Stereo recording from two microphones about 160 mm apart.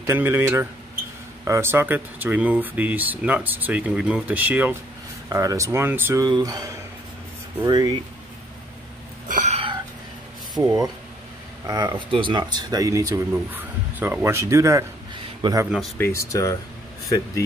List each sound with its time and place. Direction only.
0.0 s speech: 15° right (ahead or behind)
6.2 s speech: 25° right (ahead or behind)
9.3 s a sound: 50° right (ahead or behind)
10.5 s speech: 20° right (ahead or behind)
16.0 s speech: 20° left (ahead or behind)